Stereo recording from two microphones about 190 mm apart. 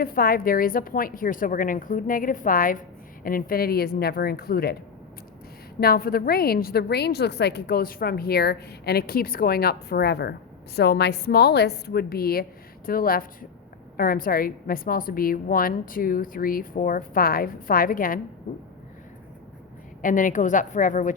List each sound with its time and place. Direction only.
0.0 s a woman's voice: 50° left (ahead or behind)
5.8 s a woman's voice: 55° left (ahead or behind)
20.0 s a woman's voice: 45° left (ahead or behind)